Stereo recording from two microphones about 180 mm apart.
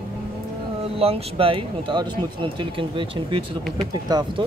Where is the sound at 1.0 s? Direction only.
35° right (ahead or behind).